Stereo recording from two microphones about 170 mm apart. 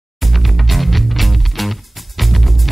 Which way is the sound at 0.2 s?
Centre (ahead or behind).